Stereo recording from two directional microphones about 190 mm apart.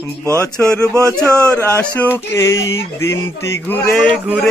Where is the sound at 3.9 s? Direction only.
Centre (ahead or behind).